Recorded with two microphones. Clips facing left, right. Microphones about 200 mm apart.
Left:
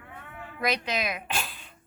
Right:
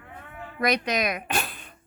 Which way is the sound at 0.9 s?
60° right (ahead or behind).